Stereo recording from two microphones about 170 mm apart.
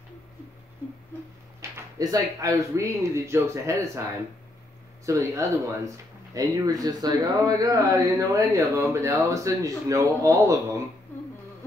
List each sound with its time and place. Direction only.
1.6 s speech: 20° right (ahead or behind)
5.0 s speech: 20° right (ahead or behind)
11.1 s a sound: 10° left (ahead or behind)